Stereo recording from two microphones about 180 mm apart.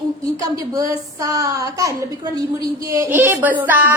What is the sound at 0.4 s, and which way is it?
A woman's voice, 20° right (ahead or behind).